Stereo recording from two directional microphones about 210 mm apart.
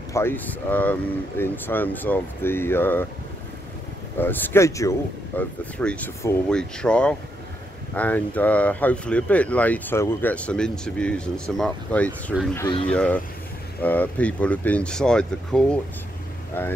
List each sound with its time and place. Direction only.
0.1 s speech: 10° left (ahead or behind)
4.2 s speech: 10° left (ahead or behind)
12.5 s speech: 20° left (ahead or behind)
12.9 s speech: 5° left (ahead or behind)